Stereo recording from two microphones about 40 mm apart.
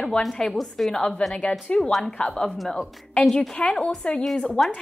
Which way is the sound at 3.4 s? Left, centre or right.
Left.